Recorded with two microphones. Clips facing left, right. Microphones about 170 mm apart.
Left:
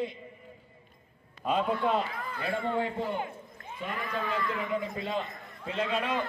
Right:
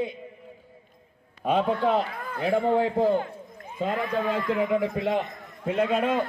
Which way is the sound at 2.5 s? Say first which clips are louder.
Right 8 dB; 90° right.